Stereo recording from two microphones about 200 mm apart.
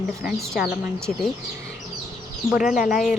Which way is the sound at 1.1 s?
40° left (ahead or behind).